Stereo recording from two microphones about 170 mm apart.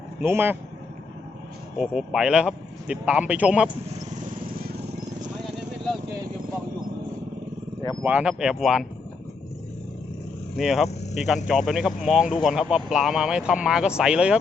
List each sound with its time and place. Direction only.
0.2 s speech: 10° right (ahead or behind)
1.8 s speech: centre (ahead or behind)
8.0 s speech: 5° right (ahead or behind)
10.6 s speech: centre (ahead or behind)